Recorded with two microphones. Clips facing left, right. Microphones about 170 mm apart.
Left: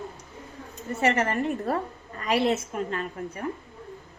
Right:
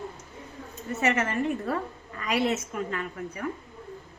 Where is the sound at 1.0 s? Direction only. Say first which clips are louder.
Left 2 dB; 35° left (ahead or behind).